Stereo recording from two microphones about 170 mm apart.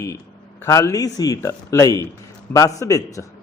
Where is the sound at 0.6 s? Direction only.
20° left (ahead or behind).